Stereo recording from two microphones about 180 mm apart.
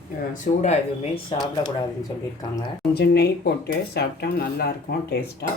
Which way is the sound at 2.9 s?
65° left (ahead or behind).